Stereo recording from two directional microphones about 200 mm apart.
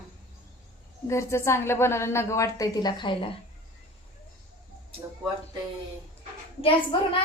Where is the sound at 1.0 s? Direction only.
15° left (ahead or behind).